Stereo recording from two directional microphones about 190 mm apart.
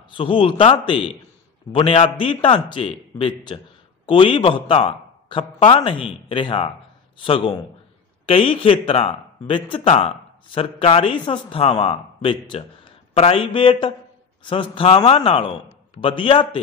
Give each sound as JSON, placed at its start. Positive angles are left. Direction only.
{"t": 0.1, "sound": "speech", "side_deg": 25}